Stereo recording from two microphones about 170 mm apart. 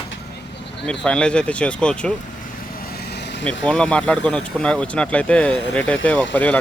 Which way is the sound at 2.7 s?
65° left (ahead or behind).